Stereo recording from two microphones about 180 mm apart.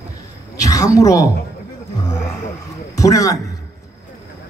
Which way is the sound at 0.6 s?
20° left (ahead or behind).